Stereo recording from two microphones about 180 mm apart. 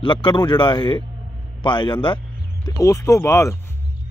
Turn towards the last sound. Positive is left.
turn(degrees=15)  # may be behind; listen again after turning